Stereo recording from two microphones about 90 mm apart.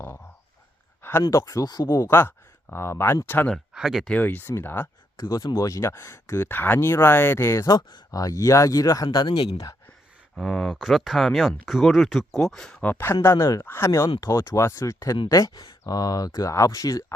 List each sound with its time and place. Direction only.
1.3 s speech: 40° left (ahead or behind); by 3.5 s 20° left (ahead or behind)
3.8 s speech: centre (ahead or behind)
4.1 s speech: 20° left (ahead or behind)
6.5 s speech: 20° left (ahead or behind); by 9.0 s 40° left (ahead or behind)
9.1 s speech: 55° left (ahead or behind)
10.3 s speech: 5° right (ahead or behind)
12.8 s speech: 25° left (ahead or behind)